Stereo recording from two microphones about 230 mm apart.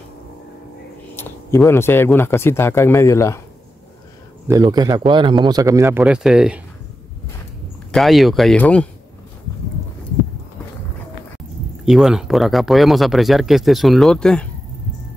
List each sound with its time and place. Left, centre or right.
1.1 s speech: centre
4.5 s a man's voice: centre
7.9 s speech: centre
11.8 s speech: centre